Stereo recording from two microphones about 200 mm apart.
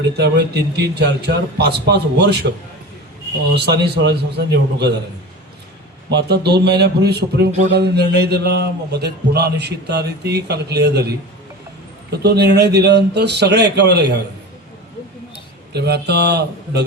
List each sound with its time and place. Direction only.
0.2 s speech: 55° right (ahead or behind)
3.5 s speech: 55° right (ahead or behind)
6.1 s speech: 55° right (ahead or behind)
12.1 s speech: 55° right (ahead or behind)
15.7 s speech: 55° right (ahead or behind)